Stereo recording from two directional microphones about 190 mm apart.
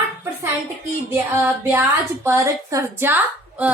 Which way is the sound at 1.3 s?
10° right (ahead or behind).